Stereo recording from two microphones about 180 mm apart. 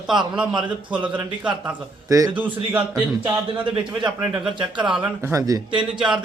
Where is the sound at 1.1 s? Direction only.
5° right (ahead or behind).